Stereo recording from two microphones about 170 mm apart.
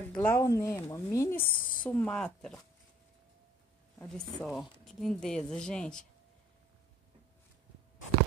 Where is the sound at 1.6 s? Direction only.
55° left (ahead or behind).